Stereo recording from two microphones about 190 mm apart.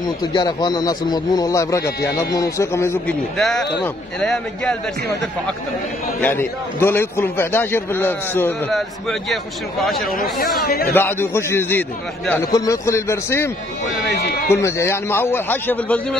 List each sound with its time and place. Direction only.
0.0 s a man's voice: 20° left (ahead or behind)
3.3 s speech: centre (ahead or behind)
6.2 s a man's voice: 10° left (ahead or behind)
9.8 s speech: centre (ahead or behind)
10.6 s speech: 50° left (ahead or behind)
10.9 s a man's voice: 10° left (ahead or behind)
14.5 s a man's voice: 15° left (ahead or behind)